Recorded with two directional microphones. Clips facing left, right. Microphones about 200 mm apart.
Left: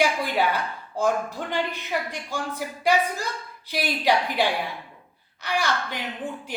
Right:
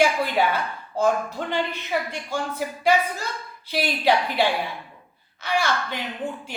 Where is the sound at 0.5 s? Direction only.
15° left (ahead or behind).